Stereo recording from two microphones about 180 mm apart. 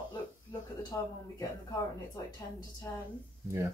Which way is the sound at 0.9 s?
20° left (ahead or behind).